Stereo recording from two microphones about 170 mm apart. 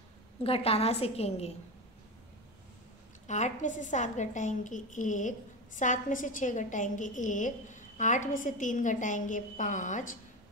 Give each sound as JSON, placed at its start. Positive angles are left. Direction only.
{"t": 0.4, "sound": "a woman's voice", "side_deg": 35}
{"t": 3.3, "sound": "a woman's voice", "side_deg": 45}